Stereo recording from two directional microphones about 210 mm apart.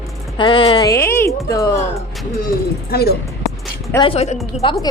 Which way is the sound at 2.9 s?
50° left (ahead or behind).